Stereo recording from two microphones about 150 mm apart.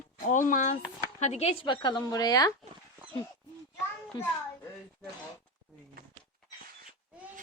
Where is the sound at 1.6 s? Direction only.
30° left (ahead or behind).